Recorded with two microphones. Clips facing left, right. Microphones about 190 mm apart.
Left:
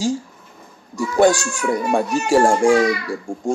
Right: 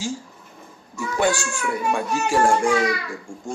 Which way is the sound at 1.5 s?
40° left (ahead or behind).